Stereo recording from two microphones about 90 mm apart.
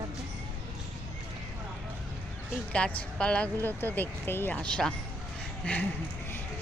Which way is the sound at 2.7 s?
15° left (ahead or behind).